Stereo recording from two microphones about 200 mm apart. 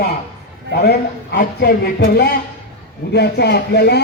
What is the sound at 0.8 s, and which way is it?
A man's voice, 55° left (ahead or behind).